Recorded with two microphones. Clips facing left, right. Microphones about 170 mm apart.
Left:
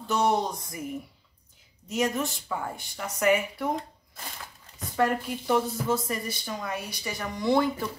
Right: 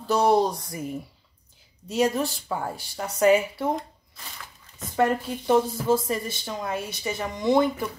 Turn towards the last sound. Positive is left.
turn(degrees=-20)  # may be behind; listen again after turning